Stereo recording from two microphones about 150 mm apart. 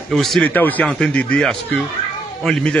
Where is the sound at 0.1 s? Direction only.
Centre (ahead or behind).